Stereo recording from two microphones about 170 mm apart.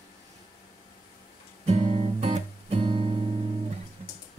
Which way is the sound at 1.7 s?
40° right (ahead or behind).